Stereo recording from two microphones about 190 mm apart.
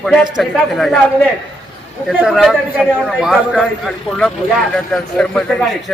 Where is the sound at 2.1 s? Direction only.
5° right (ahead or behind).